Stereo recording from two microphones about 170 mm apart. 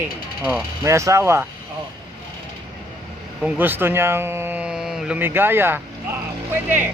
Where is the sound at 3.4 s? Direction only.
10° right (ahead or behind).